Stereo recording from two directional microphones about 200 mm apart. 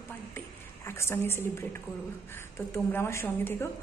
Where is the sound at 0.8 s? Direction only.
15° left (ahead or behind).